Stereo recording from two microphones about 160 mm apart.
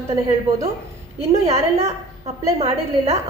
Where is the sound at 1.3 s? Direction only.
40° right (ahead or behind).